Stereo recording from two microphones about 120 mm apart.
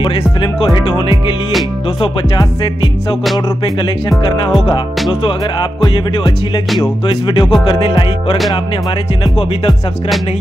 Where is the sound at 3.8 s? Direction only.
40° left (ahead or behind).